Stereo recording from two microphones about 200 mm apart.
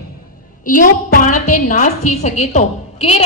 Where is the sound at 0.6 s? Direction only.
40° left (ahead or behind).